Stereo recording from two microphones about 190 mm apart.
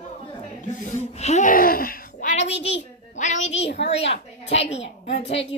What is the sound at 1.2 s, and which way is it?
A woman's voice, 40° left (ahead or behind).